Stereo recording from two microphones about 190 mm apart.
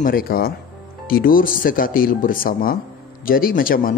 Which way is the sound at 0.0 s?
50° left (ahead or behind).